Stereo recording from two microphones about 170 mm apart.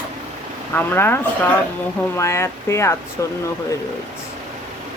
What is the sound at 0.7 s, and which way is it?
Speech, 10° left (ahead or behind).